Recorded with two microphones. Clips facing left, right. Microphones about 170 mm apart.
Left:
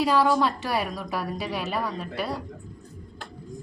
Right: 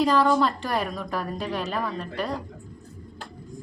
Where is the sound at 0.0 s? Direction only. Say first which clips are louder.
Right 1 dB; 5° left (ahead or behind).